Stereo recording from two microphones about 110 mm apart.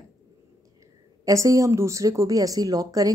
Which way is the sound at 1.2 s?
30° right (ahead or behind).